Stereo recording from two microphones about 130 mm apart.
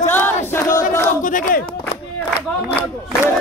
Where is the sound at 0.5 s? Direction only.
15° left (ahead or behind).